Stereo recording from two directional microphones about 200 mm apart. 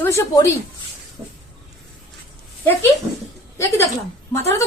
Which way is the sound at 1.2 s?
20° right (ahead or behind).